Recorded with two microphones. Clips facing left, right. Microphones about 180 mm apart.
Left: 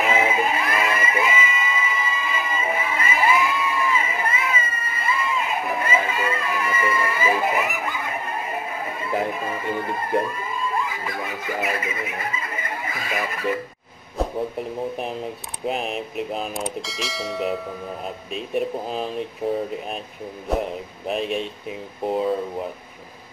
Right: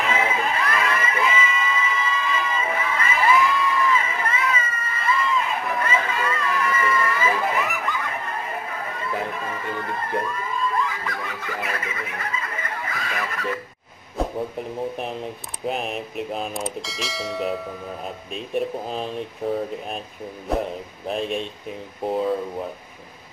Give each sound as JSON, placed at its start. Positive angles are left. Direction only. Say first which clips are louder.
{"t": 0.0, "sound": "crowd", "louder": "left 3 dB", "side_deg": 15}
{"t": 11.5, "sound": "a sound", "louder": "left 5 dB", "side_deg": 20}
{"t": 11.8, "sound": "snicker", "louder": "left 3 dB", "side_deg": 10}
{"t": 14.1, "sound": "a sound", "louder": "left 1 dB", "side_deg": 0}
{"t": 15.6, "sound": "bell", "louder": "left 1 dB", "side_deg": 0}
{"t": 18.0, "sound": "speech", "louder": "left 2 dB", "side_deg": 0}